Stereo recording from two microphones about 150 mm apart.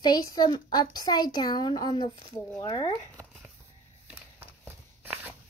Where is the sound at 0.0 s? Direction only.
25° left (ahead or behind).